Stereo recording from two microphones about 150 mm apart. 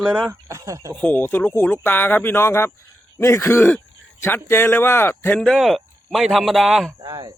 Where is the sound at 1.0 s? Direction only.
10° left (ahead or behind).